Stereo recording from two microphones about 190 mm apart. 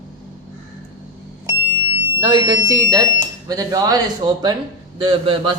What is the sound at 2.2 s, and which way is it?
Speech, 20° right (ahead or behind).